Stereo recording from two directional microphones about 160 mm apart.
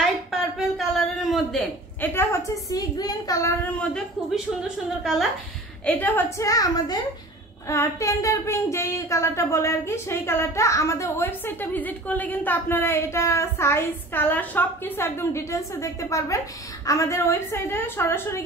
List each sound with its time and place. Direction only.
0.3 s a sound: centre (ahead or behind)
2.0 s a woman's voice: 15° left (ahead or behind)
5.9 s speech: 10° left (ahead or behind)